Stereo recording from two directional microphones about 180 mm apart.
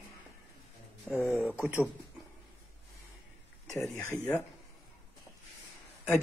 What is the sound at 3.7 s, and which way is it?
Speech, 15° left (ahead or behind).